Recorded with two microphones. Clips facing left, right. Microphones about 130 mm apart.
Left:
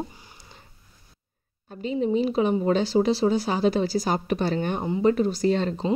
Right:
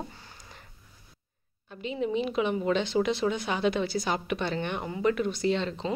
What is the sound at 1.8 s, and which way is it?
Speech, 35° left (ahead or behind).